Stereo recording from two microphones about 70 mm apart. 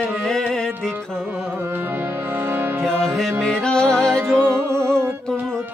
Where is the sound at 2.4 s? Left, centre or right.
Right.